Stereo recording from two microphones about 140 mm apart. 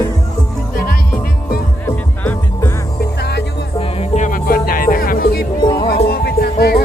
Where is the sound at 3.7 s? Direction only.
45° left (ahead or behind).